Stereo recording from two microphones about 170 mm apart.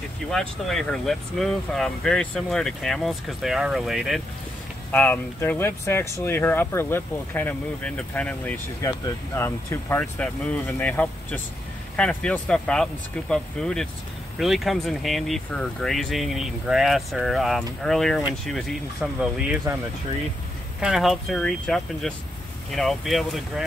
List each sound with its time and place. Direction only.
0.3 s speech: centre (ahead or behind)
4.9 s speech: 10° left (ahead or behind); by 19.6 s 5° right (ahead or behind)
20.8 s speech: centre (ahead or behind)